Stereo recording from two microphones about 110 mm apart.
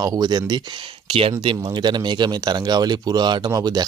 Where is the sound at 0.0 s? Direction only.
35° right (ahead or behind).